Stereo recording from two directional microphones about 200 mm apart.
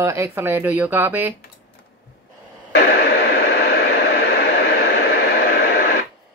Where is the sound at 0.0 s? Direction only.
15° right (ahead or behind).